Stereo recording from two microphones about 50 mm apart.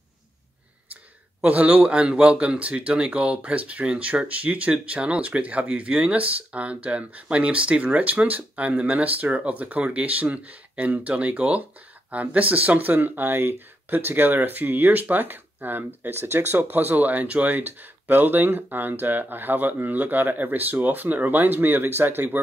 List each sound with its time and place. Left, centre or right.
1.4 s speech: right
16.5 s speech: right